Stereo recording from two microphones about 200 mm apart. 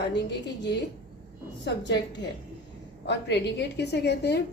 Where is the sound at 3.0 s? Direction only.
60° left (ahead or behind).